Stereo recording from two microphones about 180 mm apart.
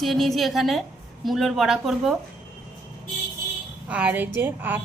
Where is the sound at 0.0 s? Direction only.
Centre (ahead or behind).